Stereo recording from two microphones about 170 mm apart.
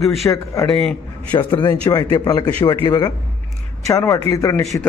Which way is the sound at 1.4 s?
25° left (ahead or behind).